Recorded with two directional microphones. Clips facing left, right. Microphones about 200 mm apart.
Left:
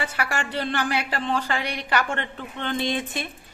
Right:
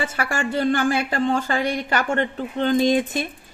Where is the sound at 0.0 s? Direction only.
25° right (ahead or behind).